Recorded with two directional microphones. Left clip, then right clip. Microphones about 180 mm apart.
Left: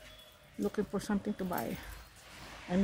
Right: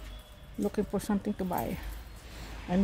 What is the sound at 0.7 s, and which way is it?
Speech, 5° right (ahead or behind).